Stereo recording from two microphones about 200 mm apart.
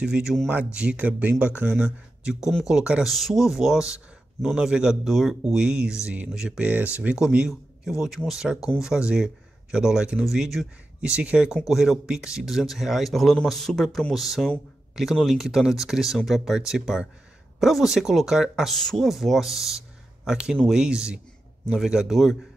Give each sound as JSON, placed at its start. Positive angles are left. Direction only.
{"t": 0.0, "sound": "speech", "side_deg": -5}